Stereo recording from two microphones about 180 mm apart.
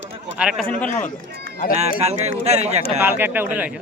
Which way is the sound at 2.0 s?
35° right (ahead or behind).